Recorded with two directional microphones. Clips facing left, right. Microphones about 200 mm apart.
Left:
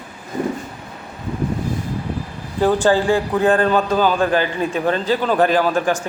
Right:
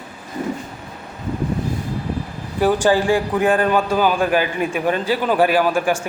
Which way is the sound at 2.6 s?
10° right (ahead or behind).